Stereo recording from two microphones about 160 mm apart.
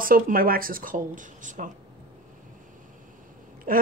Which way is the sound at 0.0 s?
60° right (ahead or behind).